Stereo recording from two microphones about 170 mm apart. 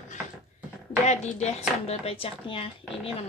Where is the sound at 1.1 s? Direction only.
40° left (ahead or behind).